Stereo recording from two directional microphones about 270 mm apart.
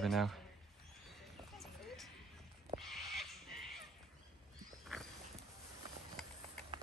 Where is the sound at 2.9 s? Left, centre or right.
Centre.